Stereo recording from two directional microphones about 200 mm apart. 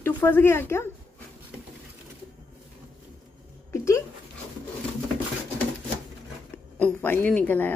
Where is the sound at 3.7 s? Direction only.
15° left (ahead or behind).